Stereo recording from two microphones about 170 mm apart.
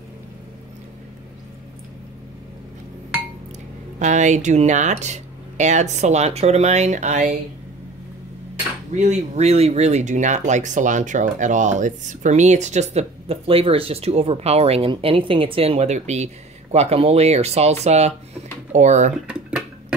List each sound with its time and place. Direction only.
4.0 s speech: 45° right (ahead or behind)
8.9 s speech: 40° right (ahead or behind)